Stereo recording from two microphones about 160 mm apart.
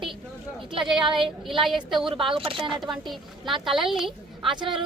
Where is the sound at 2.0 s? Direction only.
30° right (ahead or behind).